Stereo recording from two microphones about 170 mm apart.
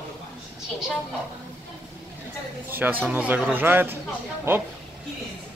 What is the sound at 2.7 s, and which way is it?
Speech, 10° right (ahead or behind).